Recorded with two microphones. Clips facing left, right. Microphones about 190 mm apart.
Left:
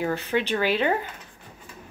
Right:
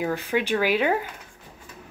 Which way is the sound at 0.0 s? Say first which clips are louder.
Even; 10° right (ahead or behind).